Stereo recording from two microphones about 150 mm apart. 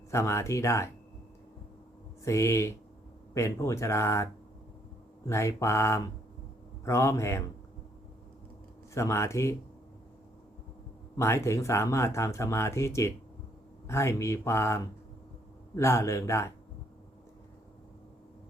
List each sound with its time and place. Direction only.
0.1 s speech: 20° left (ahead or behind)
2.2 s speech: 20° left (ahead or behind)
9.0 s speech: 20° left (ahead or behind)
11.2 s speech: 20° left (ahead or behind)